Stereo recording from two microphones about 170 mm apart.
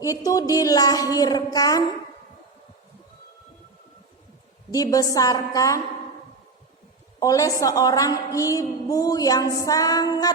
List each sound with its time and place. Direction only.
0.0 s a woman's voice: 20° left (ahead or behind)
4.7 s a woman's voice: 20° left (ahead or behind)
7.2 s a woman's voice: 20° left (ahead or behind)